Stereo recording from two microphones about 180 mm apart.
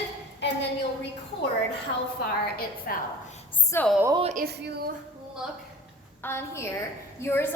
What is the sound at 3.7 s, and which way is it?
Speech, 15° left (ahead or behind).